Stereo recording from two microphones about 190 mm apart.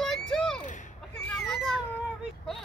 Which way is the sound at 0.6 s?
40° left (ahead or behind).